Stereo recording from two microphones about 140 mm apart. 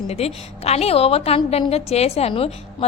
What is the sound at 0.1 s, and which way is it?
A woman's voice, 45° left (ahead or behind).